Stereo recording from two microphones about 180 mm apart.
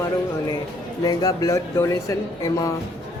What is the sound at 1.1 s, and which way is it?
Speech, 20° left (ahead or behind).